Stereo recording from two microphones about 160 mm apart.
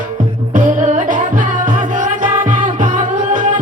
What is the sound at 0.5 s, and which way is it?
Music, 55° right (ahead or behind).